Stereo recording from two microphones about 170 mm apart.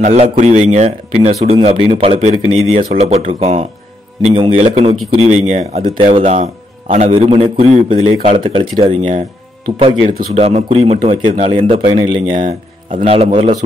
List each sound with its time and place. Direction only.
0.0 s a man's voice: 40° right (ahead or behind)
5.9 s a man's voice: 30° right (ahead or behind)
10.3 s a man's voice: 35° right (ahead or behind)
11.0 s a man's voice: 25° right (ahead or behind)